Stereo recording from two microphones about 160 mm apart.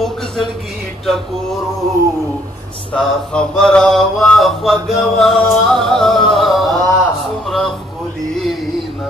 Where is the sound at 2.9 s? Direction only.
5° left (ahead or behind).